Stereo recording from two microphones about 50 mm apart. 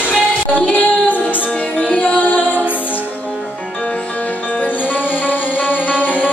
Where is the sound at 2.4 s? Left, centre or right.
Right.